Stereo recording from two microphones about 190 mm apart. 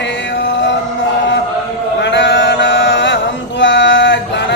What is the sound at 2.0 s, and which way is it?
Chant, 70° left (ahead or behind).